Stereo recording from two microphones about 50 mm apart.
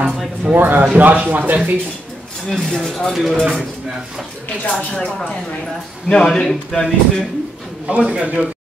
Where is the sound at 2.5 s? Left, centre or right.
Centre.